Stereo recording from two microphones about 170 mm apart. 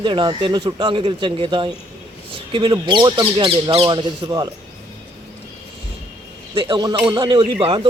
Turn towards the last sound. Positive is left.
turn(degrees=-30)  # may be behind; listen again after turning